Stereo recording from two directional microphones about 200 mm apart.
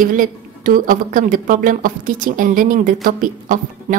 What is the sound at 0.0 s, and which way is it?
A woman's voice, 45° right (ahead or behind).